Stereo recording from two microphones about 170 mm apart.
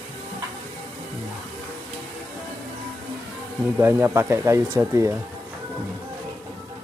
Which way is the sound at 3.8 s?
15° right (ahead or behind).